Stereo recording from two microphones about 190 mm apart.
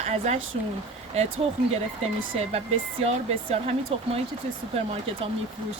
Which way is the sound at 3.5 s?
30° right (ahead or behind).